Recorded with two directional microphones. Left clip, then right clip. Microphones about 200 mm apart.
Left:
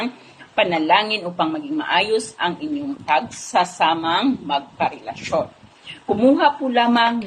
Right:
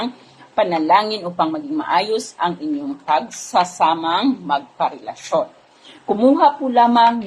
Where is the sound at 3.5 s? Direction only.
10° right (ahead or behind).